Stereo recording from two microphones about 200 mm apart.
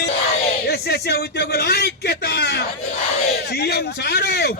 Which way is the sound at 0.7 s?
55° left (ahead or behind).